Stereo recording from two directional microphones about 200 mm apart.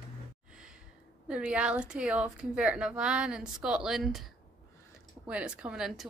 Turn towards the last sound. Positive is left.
turn(degrees=-5)  # may be behind; listen again after turning